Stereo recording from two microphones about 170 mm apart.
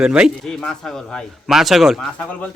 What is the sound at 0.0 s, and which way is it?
Speech, 5° right (ahead or behind).